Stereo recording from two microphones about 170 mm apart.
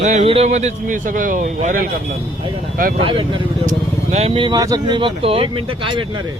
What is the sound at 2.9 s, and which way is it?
Speech, 30° right (ahead or behind).